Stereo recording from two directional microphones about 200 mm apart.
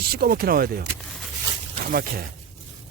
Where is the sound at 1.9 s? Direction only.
45° right (ahead or behind).